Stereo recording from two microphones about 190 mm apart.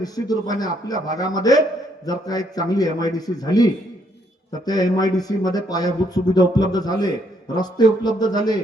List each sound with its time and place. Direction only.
0.0 s a man's voice: 20° left (ahead or behind)